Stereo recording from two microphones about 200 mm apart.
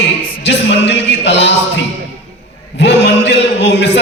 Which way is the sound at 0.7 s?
60° left (ahead or behind).